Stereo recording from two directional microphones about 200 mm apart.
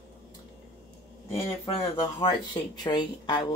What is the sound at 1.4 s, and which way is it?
Speech, 30° left (ahead or behind).